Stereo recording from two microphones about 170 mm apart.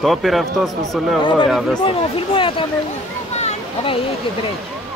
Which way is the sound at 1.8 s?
30° left (ahead or behind).